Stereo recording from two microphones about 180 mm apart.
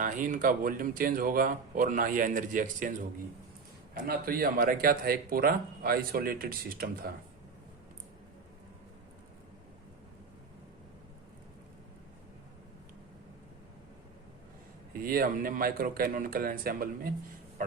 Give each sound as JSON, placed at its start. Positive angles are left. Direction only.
{"t": 0.0, "sound": "speech", "side_deg": -45}
{"t": 3.9, "sound": "speech", "side_deg": -55}
{"t": 14.9, "sound": "speech", "side_deg": -55}